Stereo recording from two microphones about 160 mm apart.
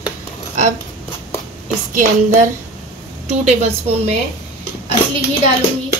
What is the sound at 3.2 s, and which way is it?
Speech, 40° right (ahead or behind).